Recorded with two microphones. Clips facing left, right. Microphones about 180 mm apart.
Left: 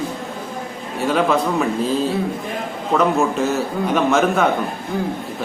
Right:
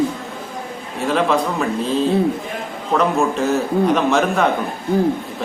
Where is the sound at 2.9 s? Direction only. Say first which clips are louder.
Even; centre (ahead or behind).